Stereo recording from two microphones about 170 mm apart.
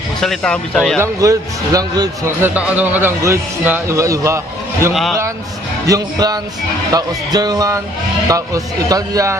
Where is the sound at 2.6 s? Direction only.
10° right (ahead or behind).